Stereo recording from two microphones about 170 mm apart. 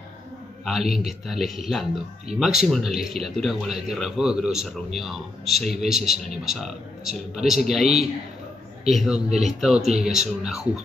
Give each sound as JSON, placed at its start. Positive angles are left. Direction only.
{"t": 0.7, "sound": "a man's voice", "side_deg": 0}